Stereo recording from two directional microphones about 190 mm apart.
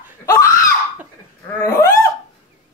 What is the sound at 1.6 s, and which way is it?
Hiccup, 15° left (ahead or behind).